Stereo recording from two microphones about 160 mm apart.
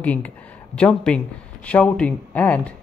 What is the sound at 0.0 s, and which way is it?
Speech, 10° left (ahead or behind).